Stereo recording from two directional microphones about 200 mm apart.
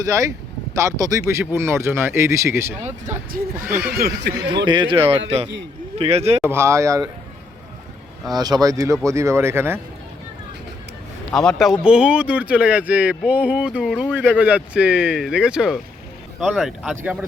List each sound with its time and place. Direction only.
0.0 s speech: 15° right (ahead or behind)
2.8 s speech: 40° right (ahead or behind)
3.9 s speech: 50° right (ahead or behind)
4.4 s a man's voice: 20° right (ahead or behind)
6.4 s speech: 10° right (ahead or behind)
8.3 s speech: 20° right (ahead or behind)
11.3 s speech: 5° left (ahead or behind)